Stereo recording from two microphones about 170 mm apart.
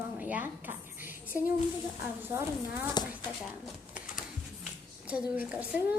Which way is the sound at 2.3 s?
15° right (ahead or behind).